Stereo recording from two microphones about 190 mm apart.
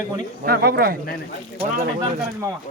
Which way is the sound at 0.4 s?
55° right (ahead or behind).